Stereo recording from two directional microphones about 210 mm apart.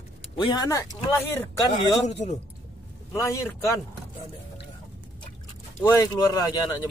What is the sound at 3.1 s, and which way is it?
Speech, 15° left (ahead or behind).